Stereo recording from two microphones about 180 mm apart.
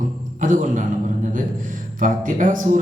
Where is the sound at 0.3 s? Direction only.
45° right (ahead or behind).